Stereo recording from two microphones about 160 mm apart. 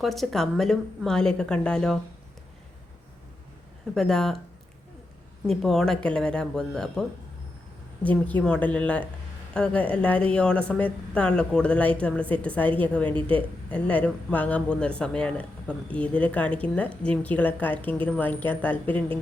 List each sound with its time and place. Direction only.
0.0 s a woman's voice: centre (ahead or behind)
3.9 s a woman's voice: 5° left (ahead or behind)
5.5 s a woman's voice: centre (ahead or behind)
8.0 s speech: 10° left (ahead or behind)
13.1 s speech: 35° right (ahead or behind)
13.7 s speech: 10° left (ahead or behind)